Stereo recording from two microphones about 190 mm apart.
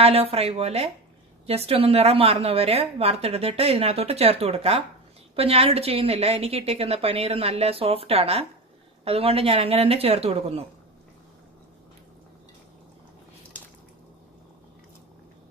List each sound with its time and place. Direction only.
0.0 s a woman's voice: 30° right (ahead or behind)